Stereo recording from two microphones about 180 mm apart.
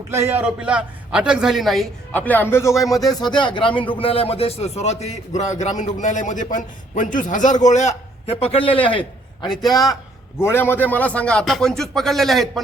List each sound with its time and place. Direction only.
0.1 s a man's voice: 15° right (ahead or behind)